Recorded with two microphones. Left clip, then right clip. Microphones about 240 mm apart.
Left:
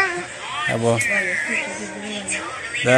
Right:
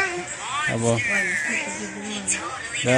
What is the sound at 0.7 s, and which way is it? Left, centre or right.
Music, centre.